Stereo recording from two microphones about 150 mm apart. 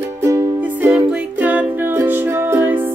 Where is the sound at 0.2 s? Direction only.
20° right (ahead or behind).